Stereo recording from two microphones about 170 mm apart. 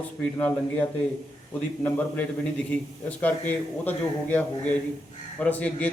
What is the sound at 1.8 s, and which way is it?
A man's voice, 10° left (ahead or behind).